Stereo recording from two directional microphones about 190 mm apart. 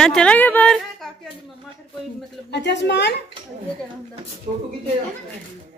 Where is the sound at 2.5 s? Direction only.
65° left (ahead or behind).